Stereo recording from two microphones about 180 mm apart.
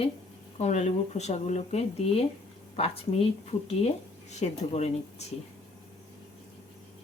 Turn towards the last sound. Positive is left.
turn(degrees=35)  # may be behind; listen again after turning